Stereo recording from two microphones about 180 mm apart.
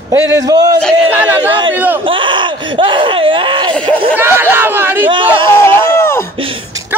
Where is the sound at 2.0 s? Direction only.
30° right (ahead or behind).